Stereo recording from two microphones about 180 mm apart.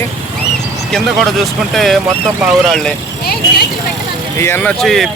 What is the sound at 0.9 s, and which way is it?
Speech, centre (ahead or behind).